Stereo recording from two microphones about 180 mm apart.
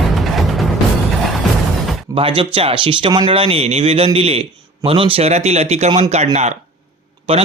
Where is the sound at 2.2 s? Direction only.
30° right (ahead or behind).